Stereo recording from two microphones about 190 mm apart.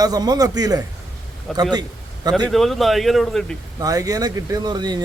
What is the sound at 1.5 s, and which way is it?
Speech, centre (ahead or behind).